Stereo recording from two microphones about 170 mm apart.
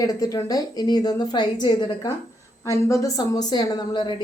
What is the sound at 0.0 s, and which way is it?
A woman's voice, 20° left (ahead or behind).